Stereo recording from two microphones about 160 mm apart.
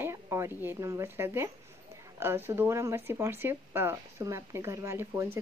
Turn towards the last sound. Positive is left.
turn(degrees=-15)  # may be behind; listen again after turning